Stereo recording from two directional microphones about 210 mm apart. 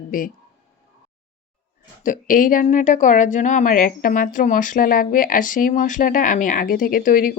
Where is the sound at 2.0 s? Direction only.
40° left (ahead or behind).